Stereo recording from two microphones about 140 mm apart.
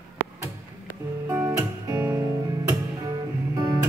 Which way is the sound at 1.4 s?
25° right (ahead or behind).